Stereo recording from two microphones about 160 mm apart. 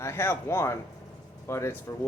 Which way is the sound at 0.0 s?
15° left (ahead or behind).